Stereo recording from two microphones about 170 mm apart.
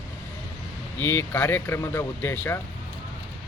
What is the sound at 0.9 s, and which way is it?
Speech, 15° left (ahead or behind).